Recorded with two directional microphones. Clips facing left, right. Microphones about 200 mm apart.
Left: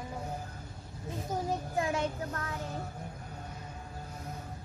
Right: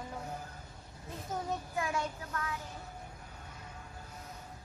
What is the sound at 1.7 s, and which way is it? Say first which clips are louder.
Child singing: left 5 dB; 30° left (ahead or behind).